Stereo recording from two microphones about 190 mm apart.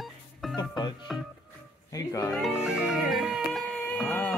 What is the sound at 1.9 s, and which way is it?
Speech, 15° left (ahead or behind).